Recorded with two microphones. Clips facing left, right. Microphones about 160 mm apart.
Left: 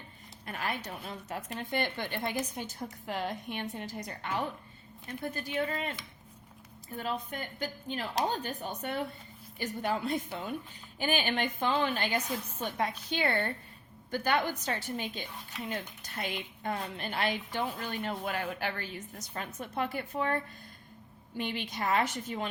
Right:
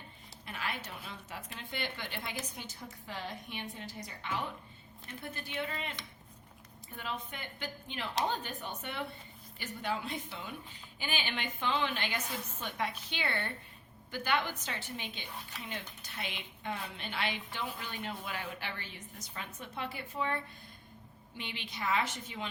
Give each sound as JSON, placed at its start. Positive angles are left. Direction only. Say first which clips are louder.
{"t": 0.4, "sound": "a sound", "louder": "left 4 dB", "side_deg": 45}
{"t": 1.0, "sound": "speech", "louder": "left 6 dB", "side_deg": 45}
{"t": 5.2, "sound": "a woman's voice", "louder": "left 6 dB", "side_deg": 40}